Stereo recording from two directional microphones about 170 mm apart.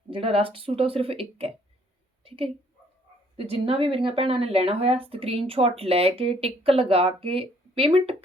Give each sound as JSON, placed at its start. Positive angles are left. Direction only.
{"t": 0.1, "sound": "a woman's voice", "side_deg": -35}